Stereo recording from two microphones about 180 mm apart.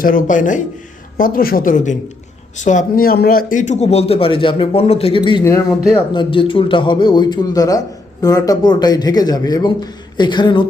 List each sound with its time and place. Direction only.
0.0 s a man's voice: 50° left (ahead or behind); by 5.4 s 30° left (ahead or behind)
5.4 s speech: 15° left (ahead or behind)
6.1 s a man's voice: 30° left (ahead or behind)